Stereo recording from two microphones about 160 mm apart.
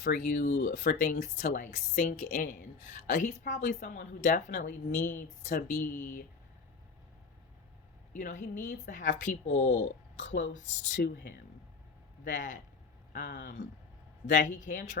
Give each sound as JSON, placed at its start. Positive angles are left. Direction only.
{"t": 0.0, "sound": "speech", "side_deg": 55}
{"t": 8.1, "sound": "speech", "side_deg": 50}
{"t": 12.3, "sound": "speech", "side_deg": 55}